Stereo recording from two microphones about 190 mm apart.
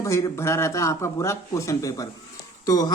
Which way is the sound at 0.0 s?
15° left (ahead or behind).